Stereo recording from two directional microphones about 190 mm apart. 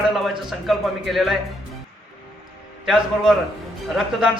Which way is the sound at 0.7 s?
Centre (ahead or behind).